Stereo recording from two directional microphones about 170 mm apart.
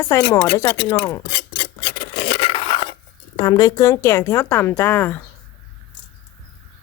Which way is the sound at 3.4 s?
20° left (ahead or behind).